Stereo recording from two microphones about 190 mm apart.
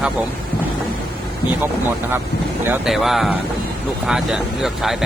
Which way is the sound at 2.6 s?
5° right (ahead or behind).